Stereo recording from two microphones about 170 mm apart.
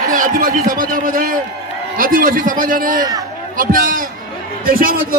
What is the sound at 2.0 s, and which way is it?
A man's voice, 55° right (ahead or behind).